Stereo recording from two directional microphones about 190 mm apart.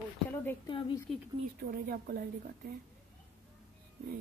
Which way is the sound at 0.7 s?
25° left (ahead or behind).